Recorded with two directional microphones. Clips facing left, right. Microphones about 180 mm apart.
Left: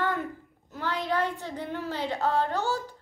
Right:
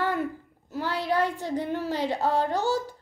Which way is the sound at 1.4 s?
10° right (ahead or behind).